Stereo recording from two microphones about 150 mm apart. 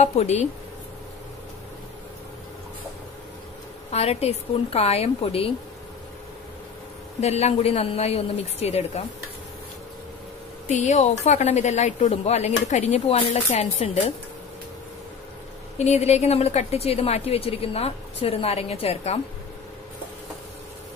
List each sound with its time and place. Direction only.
0.0 s a woman's voice: 45° left (ahead or behind)
3.9 s a woman's voice: 45° left (ahead or behind)
7.2 s a woman's voice: 45° left (ahead or behind)
10.7 s a woman's voice: 55° left (ahead or behind)
15.8 s a woman's voice: 45° left (ahead or behind)